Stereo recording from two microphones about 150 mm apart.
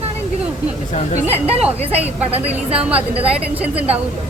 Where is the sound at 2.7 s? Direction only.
10° right (ahead or behind).